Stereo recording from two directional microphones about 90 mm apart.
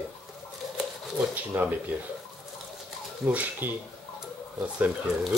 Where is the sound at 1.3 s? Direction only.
20° right (ahead or behind).